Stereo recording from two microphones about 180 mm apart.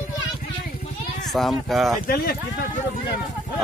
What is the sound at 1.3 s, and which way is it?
Speech, centre (ahead or behind).